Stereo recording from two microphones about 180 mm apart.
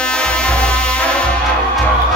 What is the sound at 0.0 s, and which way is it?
Music, 5° left (ahead or behind).